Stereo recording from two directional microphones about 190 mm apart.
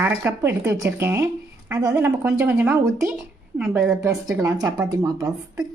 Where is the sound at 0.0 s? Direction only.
10° right (ahead or behind).